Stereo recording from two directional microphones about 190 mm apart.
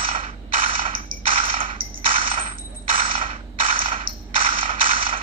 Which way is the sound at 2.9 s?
30° right (ahead or behind).